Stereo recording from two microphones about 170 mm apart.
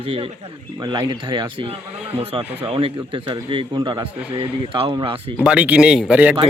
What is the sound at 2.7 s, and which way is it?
A man's voice, 30° right (ahead or behind).